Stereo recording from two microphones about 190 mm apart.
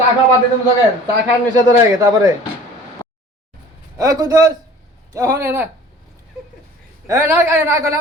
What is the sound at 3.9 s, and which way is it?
A man's voice, 20° right (ahead or behind).